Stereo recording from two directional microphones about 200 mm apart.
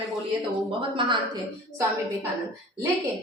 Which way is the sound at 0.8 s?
25° right (ahead or behind).